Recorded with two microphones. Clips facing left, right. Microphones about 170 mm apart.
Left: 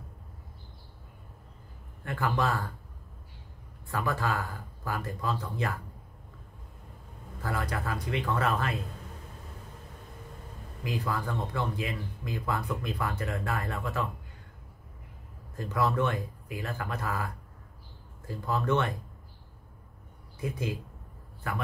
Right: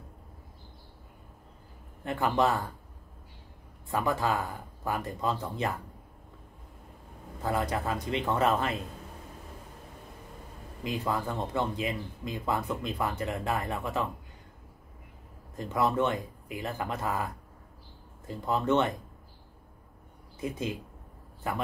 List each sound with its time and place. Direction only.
2.0 s speech: 20° right (ahead or behind)
3.9 s speech: 20° right (ahead or behind)
7.4 s speech: 20° right (ahead or behind)
10.8 s speech: 20° right (ahead or behind)
15.5 s speech: 20° right (ahead or behind)
20.3 s speech: 20° right (ahead or behind)